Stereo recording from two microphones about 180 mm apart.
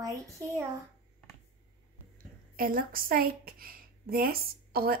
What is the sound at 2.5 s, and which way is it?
A woman's voice, 55° right (ahead or behind).